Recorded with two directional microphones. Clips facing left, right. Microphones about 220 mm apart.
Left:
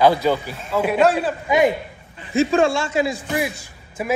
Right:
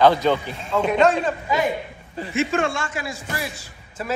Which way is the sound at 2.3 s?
35° left (ahead or behind).